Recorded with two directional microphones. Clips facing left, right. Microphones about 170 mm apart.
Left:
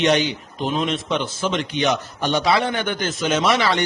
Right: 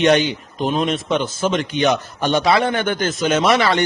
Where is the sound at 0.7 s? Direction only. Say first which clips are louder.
Right 3 dB; 45° right (ahead or behind).